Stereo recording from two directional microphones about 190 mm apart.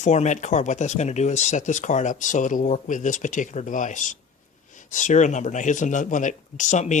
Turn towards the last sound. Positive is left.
turn(degrees=40)  # may be behind; listen again after turning